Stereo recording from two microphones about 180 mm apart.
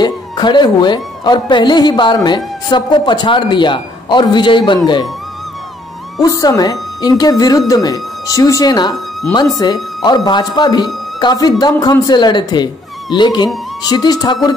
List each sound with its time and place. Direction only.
0.0 s a woman's voice: 25° left (ahead or behind)
6.2 s a woman's voice: 20° left (ahead or behind)